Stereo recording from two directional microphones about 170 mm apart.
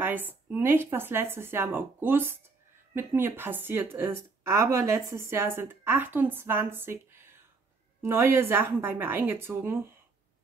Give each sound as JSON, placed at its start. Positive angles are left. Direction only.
{"t": 0.0, "sound": "a woman's voice", "side_deg": -10}